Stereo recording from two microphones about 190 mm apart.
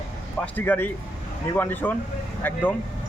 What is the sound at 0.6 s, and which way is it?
Speech, 10° left (ahead or behind).